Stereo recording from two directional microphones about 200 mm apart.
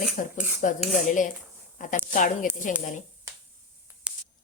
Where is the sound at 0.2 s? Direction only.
40° left (ahead or behind).